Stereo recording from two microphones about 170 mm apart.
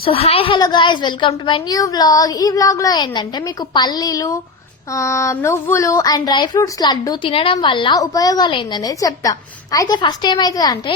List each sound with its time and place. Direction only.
0.0 s speech: 35° left (ahead or behind)